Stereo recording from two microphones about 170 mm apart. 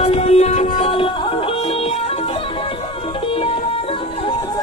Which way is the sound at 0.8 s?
30° left (ahead or behind).